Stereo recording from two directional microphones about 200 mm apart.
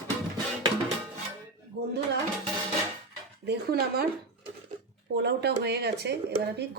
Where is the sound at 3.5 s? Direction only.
50° right (ahead or behind).